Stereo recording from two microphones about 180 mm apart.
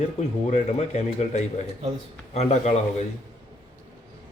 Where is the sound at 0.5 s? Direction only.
40° left (ahead or behind).